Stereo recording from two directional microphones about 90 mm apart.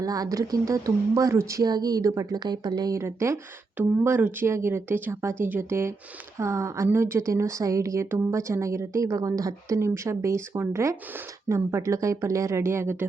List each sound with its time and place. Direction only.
0.0 s speech: 40° right (ahead or behind)
3.0 s speech: 30° right (ahead or behind)